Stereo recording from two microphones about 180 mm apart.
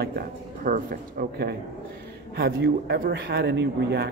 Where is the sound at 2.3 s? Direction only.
65° right (ahead or behind).